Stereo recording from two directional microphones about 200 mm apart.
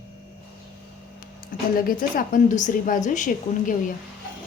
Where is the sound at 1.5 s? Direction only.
45° left (ahead or behind).